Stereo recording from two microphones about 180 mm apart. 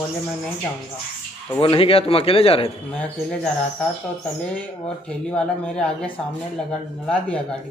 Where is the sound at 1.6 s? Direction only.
30° left (ahead or behind).